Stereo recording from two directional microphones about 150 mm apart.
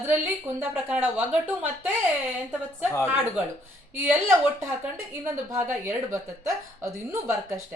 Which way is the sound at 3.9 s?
10° right (ahead or behind).